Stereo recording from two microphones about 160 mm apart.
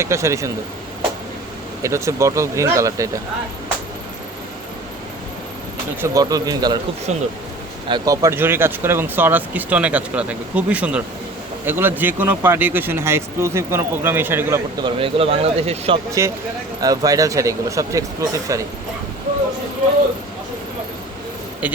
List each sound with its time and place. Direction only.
0.0 s speech: 20° right (ahead or behind)
1.8 s speech: 20° right (ahead or behind)
6.0 s speech: 20° right (ahead or behind)
7.1 s speech: 45° right (ahead or behind)
7.9 s speech: 25° right (ahead or behind)
14.8 s speech: 30° right (ahead or behind)
16.2 s speech: 20° right (ahead or behind)